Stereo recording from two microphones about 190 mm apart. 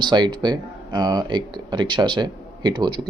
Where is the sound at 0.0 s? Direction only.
25° right (ahead or behind).